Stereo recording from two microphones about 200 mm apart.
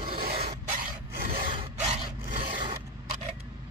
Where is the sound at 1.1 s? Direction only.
45° right (ahead or behind).